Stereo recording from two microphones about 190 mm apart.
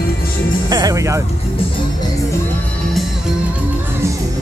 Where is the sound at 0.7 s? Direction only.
20° right (ahead or behind).